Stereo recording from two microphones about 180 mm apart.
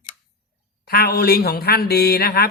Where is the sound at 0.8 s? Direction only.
60° left (ahead or behind).